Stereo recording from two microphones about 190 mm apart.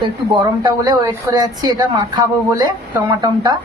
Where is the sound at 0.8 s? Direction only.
20° right (ahead or behind).